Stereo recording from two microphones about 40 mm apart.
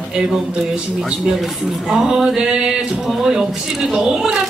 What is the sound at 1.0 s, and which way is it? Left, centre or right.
A woman's voice, centre.